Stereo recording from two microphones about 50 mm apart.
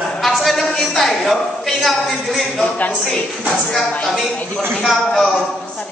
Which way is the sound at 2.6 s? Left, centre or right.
Left.